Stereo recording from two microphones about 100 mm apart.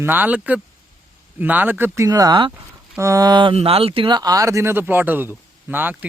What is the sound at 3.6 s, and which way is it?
Speech, 75° right (ahead or behind).